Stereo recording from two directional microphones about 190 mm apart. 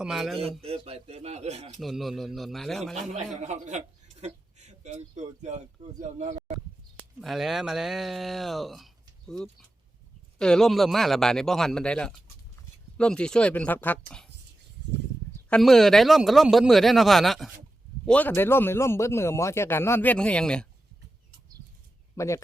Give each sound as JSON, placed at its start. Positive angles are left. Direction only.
{"t": 0.0, "sound": "speech", "side_deg": 0}
{"t": 0.6, "sound": "speech", "side_deg": -30}
{"t": 1.8, "sound": "speech", "side_deg": 0}
{"t": 2.9, "sound": "speech", "side_deg": -40}
{"t": 6.9, "sound": "speech", "side_deg": 0}
{"t": 15.4, "sound": "a man's voice", "side_deg": 5}
{"t": 22.1, "sound": "speech", "side_deg": 15}